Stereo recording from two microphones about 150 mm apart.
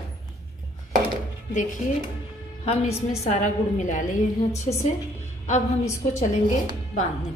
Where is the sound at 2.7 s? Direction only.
45° left (ahead or behind).